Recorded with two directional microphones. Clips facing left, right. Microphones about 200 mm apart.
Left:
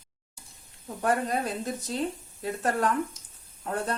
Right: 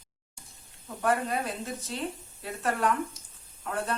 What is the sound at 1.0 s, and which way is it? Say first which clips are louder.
Speech: left 1 dB; 40° left (ahead or behind).